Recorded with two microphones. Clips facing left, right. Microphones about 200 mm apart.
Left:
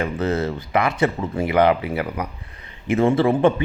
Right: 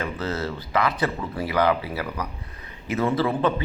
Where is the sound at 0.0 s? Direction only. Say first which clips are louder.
Left 6 dB; 20° left (ahead or behind).